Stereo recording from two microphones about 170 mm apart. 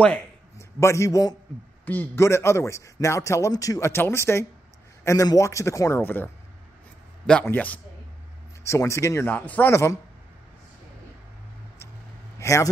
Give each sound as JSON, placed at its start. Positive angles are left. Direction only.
{"t": 0.0, "sound": "a man's voice", "side_deg": 10}
{"t": 12.4, "sound": "a man's voice", "side_deg": 15}